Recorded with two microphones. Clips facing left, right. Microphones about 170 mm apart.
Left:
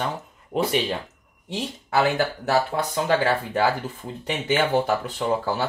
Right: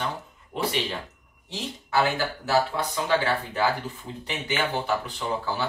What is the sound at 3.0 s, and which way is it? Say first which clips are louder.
Speech: left 3 dB; 45° left (ahead or behind).